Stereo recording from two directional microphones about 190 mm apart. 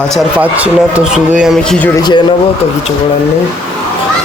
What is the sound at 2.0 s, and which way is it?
Speech, 20° left (ahead or behind).